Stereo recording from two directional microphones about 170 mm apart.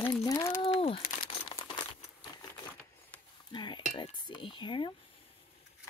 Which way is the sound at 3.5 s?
25° left (ahead or behind).